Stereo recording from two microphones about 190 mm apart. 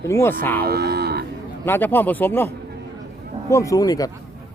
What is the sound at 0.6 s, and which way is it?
Moo, 55° right (ahead or behind).